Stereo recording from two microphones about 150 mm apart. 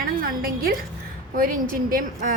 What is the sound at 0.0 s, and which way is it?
Music, 80° right.